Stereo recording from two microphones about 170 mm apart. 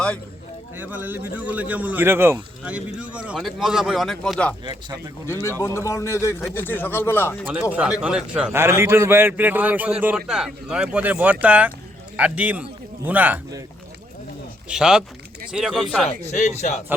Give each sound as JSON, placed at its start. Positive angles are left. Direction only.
{"t": 0.8, "sound": "a man's voice", "side_deg": -10}
{"t": 4.9, "sound": "a man's voice", "side_deg": -20}
{"t": 5.3, "sound": "a man's voice", "side_deg": 15}
{"t": 7.7, "sound": "a man's voice", "side_deg": -5}
{"t": 14.7, "sound": "speech", "side_deg": -5}
{"t": 16.0, "sound": "a man's voice", "side_deg": 40}